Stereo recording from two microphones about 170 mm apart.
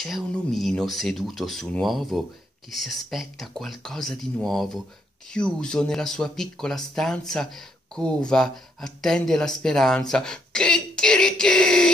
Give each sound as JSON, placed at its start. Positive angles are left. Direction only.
{"t": 0.0, "sound": "speech", "side_deg": 0}